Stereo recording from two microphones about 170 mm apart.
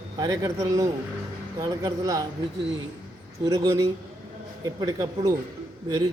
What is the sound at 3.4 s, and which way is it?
A man's voice, 20° right (ahead or behind).